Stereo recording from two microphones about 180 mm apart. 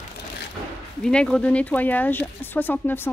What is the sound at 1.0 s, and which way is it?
Speech, 5° left (ahead or behind).